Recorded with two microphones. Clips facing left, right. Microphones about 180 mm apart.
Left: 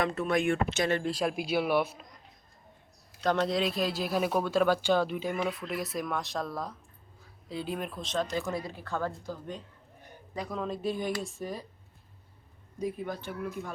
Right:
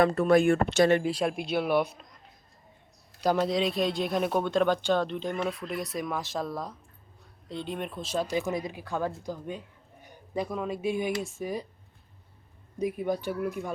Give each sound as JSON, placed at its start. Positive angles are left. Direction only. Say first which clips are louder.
{"t": 0.0, "sound": "speech", "louder": "right 7 dB", "side_deg": -35}
{"t": 1.0, "sound": "speech", "louder": "right 2 dB", "side_deg": 0}
{"t": 12.8, "sound": "speech", "louder": "right 5 dB", "side_deg": -10}